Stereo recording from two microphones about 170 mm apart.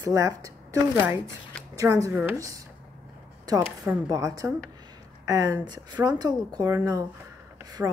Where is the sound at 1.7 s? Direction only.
20° right (ahead or behind).